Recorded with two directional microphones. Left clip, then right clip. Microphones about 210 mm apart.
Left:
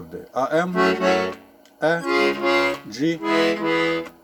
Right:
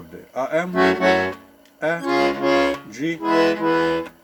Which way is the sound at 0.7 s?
20° right (ahead or behind).